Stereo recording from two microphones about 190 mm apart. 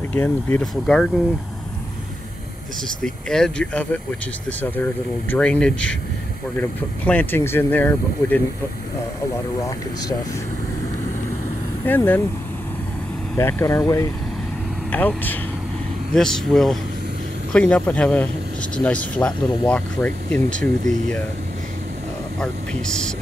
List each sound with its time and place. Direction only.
0.1 s speech: 10° left (ahead or behind)
3.0 s speech: 5° left (ahead or behind)
7.1 s speech: 10° left (ahead or behind)
9.6 s speech: 20° left (ahead or behind)
11.8 s speech: 10° left (ahead or behind)
13.4 s speech: 15° left (ahead or behind)
20.8 s speech: 40° right (ahead or behind)
22.4 s speech: 5° left (ahead or behind)